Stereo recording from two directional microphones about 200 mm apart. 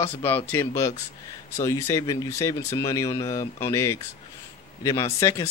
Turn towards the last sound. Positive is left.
turn(degrees=15)  # may be behind; listen again after turning